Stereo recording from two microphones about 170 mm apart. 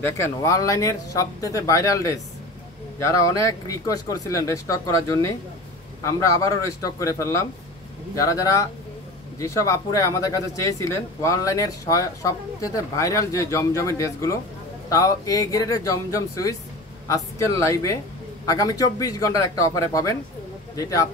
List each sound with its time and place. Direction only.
0.0 s speech: 15° left (ahead or behind)